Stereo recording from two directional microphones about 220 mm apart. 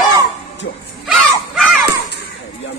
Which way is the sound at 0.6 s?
60° left (ahead or behind).